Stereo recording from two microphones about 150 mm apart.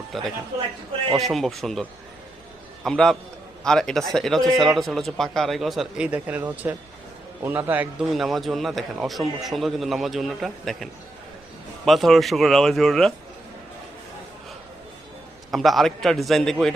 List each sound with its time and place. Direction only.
0.1 s a man's voice: centre (ahead or behind)
8.1 s speech: centre (ahead or behind)
11.9 s speech: centre (ahead or behind)
15.5 s speech: centre (ahead or behind)